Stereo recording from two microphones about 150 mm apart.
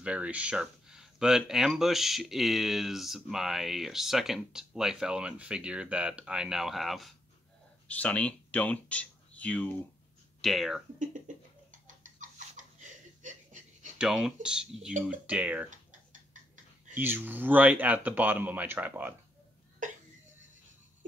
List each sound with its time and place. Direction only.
0.0 s speech: 10° right (ahead or behind)
11.7 s laughter: 55° right (ahead or behind)
13.9 s speech: 5° right (ahead or behind)
15.7 s tick-tock: 60° right (ahead or behind)
16.9 s speech: 10° right (ahead or behind)
19.8 s cough: 60° right (ahead or behind)